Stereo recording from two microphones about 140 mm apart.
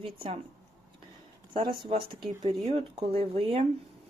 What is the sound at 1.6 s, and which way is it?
Speech, 35° right (ahead or behind).